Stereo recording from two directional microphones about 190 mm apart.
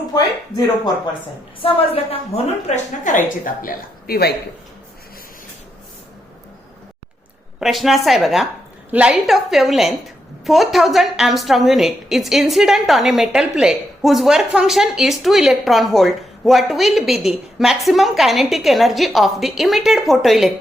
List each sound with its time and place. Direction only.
1.6 s a woman's voice: 30° left (ahead or behind); by 4.4 s 55° left (ahead or behind)
7.6 s a woman's voice: centre (ahead or behind)